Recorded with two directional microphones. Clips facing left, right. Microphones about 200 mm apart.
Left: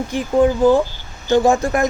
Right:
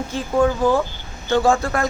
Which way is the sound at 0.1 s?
15° left (ahead or behind).